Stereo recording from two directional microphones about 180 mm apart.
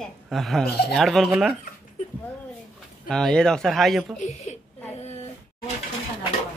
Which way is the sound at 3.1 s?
5° left (ahead or behind).